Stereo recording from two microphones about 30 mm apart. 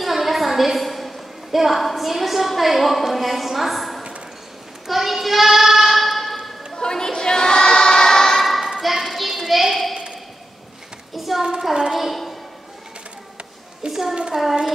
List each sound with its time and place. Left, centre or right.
0.0 s a sound: centre
1.6 s a woman's voice: centre
4.8 s child singing: centre
6.7 s choir: left
8.4 s a sound: centre
11.1 s a sound: centre
11.6 s a woman's voice: centre
13.8 s hands: right
14.3 s a woman's voice: centre